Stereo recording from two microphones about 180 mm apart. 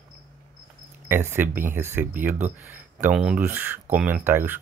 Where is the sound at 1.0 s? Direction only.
10° right (ahead or behind).